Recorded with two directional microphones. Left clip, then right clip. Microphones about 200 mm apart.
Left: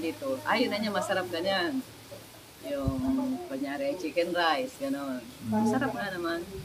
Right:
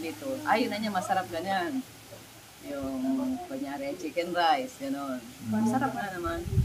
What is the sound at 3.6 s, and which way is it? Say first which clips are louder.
Speech: left 6 dB; centre (ahead or behind).